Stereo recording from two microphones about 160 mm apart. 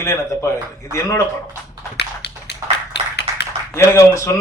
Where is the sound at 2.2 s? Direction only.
90° left.